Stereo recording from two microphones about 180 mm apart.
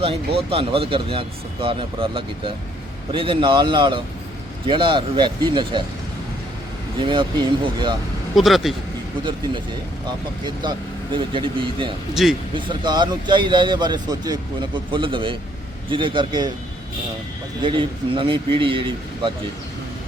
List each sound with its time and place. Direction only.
0.0 s speech: 30° right (ahead or behind)
7.0 s speech: 25° right (ahead or behind)
8.4 s speech: centre (ahead or behind)
10.4 s speech: 25° right (ahead or behind)
12.1 s speech: centre (ahead or behind)
12.5 s speech: 25° right (ahead or behind)
17.6 s speech: 25° right (ahead or behind)